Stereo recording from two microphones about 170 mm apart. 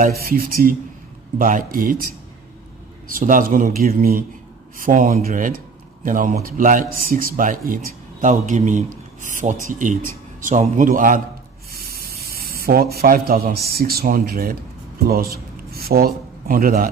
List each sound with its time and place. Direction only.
0.0 s a man's voice: 60° right (ahead or behind)
3.1 s a man's voice: 55° right (ahead or behind)
11.7 s speech: 60° right (ahead or behind)